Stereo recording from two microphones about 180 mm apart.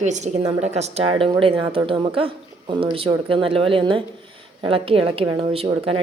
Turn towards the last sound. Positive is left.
turn(degrees=-30)  # may be behind; listen again after turning